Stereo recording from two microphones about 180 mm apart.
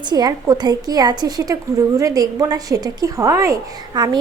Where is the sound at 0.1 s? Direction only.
20° right (ahead or behind).